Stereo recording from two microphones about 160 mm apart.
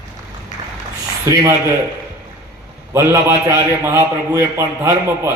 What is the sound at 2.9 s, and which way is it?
A man's voice, 15° right (ahead or behind).